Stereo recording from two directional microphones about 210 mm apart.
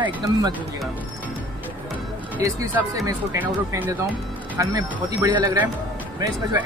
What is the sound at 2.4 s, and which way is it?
Speech, 15° right (ahead or behind).